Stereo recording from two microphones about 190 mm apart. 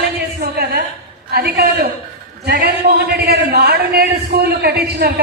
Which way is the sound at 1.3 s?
55° right (ahead or behind).